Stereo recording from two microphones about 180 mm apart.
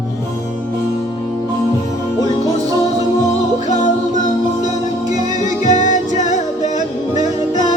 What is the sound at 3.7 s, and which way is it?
Music, 45° left (ahead or behind).